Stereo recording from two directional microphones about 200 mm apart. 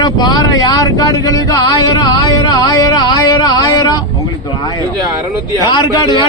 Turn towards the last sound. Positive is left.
turn(degrees=20)  # may be behind; listen again after turning